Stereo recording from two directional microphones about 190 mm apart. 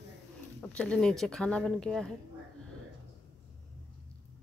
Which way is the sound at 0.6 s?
5° left (ahead or behind).